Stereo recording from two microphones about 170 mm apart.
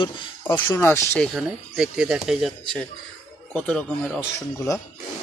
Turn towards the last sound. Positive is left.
turn(degrees=20)  # may be behind; listen again after turning